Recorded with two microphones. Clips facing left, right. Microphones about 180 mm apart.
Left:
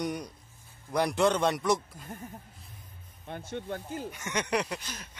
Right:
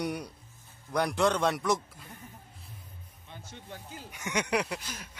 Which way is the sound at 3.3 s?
60° left (ahead or behind).